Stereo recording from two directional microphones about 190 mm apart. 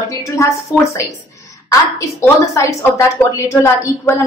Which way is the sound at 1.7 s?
15° left (ahead or behind).